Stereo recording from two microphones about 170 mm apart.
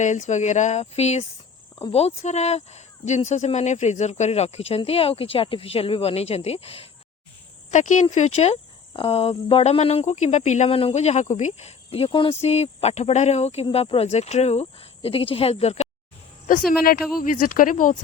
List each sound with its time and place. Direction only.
0.0 s speech: 45° left (ahead or behind)
7.7 s speech: 45° left (ahead or behind)
16.8 s speech: 60° left (ahead or behind)